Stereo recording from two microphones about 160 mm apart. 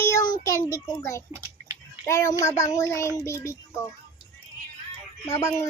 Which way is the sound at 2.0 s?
20° left (ahead or behind).